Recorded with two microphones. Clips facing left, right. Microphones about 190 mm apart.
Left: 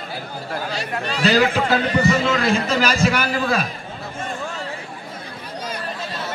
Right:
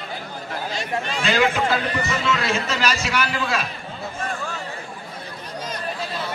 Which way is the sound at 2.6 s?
55° left (ahead or behind).